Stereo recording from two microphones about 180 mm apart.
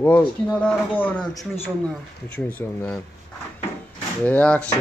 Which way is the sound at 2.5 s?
10° left (ahead or behind).